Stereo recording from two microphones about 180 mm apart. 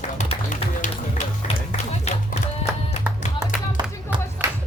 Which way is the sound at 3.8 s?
25° right (ahead or behind).